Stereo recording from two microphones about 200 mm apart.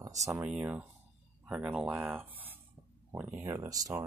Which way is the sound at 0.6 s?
10° right (ahead or behind).